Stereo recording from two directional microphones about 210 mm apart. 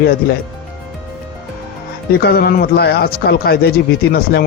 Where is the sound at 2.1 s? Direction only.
50° left (ahead or behind).